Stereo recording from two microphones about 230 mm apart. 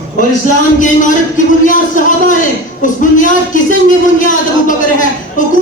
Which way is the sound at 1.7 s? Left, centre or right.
Left.